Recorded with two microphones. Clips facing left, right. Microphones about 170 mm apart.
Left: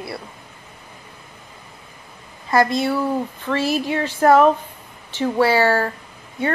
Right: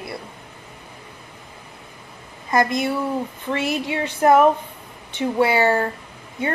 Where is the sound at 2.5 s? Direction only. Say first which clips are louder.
Left 2 dB; 20° right (ahead or behind).